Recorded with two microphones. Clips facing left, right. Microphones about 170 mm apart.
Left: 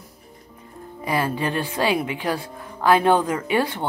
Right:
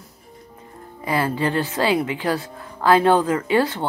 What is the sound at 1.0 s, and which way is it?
Speech, 15° left (ahead or behind).